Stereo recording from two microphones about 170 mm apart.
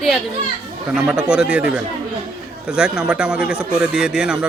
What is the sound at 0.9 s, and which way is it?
Speech, 5° right (ahead or behind).